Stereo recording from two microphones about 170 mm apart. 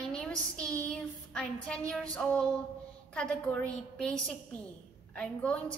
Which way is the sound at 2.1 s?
5° left (ahead or behind).